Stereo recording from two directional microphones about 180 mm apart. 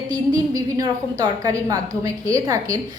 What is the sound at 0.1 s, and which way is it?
A woman's voice, 20° right (ahead or behind).